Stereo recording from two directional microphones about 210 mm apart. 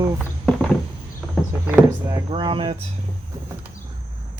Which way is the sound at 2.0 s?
20° right (ahead or behind).